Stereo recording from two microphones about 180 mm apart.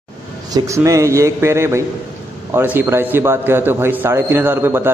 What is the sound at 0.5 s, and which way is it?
A man's voice, 20° right (ahead or behind).